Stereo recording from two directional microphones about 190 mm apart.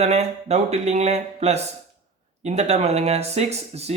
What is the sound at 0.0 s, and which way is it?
Speech, 35° right (ahead or behind).